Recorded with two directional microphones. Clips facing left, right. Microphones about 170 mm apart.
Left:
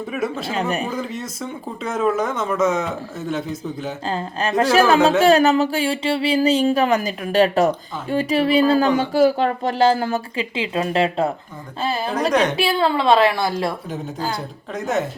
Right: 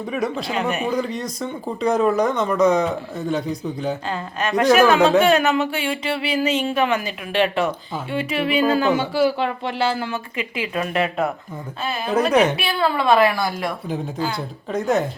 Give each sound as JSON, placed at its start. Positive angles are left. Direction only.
{"t": 0.1, "sound": "speech", "side_deg": 5}
{"t": 0.5, "sound": "speech", "side_deg": 35}
{"t": 0.9, "sound": "speech", "side_deg": 5}
{"t": 4.1, "sound": "speech", "side_deg": 30}
{"t": 4.9, "sound": "speech", "side_deg": 0}
{"t": 5.2, "sound": "speech", "side_deg": 35}
{"t": 10.5, "sound": "a woman's voice", "side_deg": 25}
{"t": 12.3, "sound": "a woman's voice", "side_deg": -5}
{"t": 12.5, "sound": "a woman's voice", "side_deg": 25}
{"t": 14.3, "sound": "speech", "side_deg": 0}